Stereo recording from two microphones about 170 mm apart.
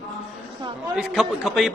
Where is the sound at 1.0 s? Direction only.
Centre (ahead or behind).